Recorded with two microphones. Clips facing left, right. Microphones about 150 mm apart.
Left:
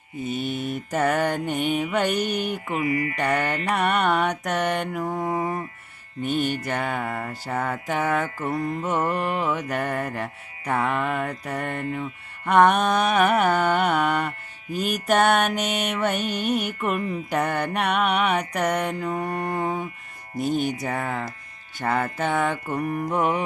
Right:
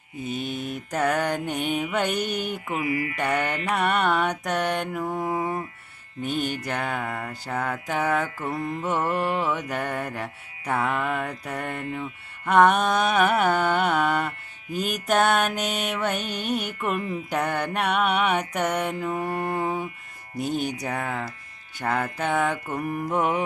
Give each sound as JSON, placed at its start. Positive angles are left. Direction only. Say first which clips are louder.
{"t": 0.3, "sound": "music", "louder": "left 2 dB", "side_deg": 0}
{"t": 2.8, "sound": "music", "louder": "left 3 dB", "side_deg": 40}
{"t": 3.2, "sound": "music", "louder": "left 1 dB", "side_deg": -5}